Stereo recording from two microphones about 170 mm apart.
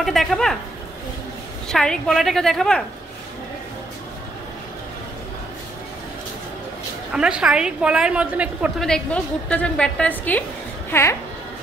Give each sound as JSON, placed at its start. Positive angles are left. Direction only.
{"t": 0.0, "sound": "a woman's voice", "side_deg": 0}
{"t": 1.7, "sound": "a woman's voice", "side_deg": 5}
{"t": 7.1, "sound": "a woman's voice", "side_deg": -5}
{"t": 8.8, "sound": "a woman's voice", "side_deg": 5}